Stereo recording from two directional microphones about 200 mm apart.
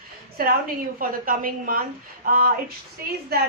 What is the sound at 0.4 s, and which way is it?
Speech, 45° right (ahead or behind).